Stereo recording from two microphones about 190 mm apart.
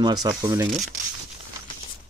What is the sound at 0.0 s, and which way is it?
Speech, 20° right (ahead or behind).